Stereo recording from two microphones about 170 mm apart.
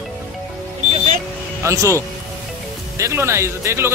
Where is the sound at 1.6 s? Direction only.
20° right (ahead or behind).